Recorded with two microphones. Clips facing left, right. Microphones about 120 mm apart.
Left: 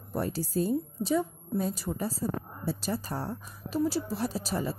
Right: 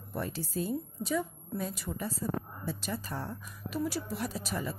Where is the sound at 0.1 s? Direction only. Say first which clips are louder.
Left 5 dB; 40° left (ahead or behind).